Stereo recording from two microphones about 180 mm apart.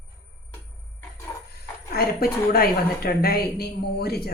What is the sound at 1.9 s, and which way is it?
A woman's voice, 60° left (ahead or behind).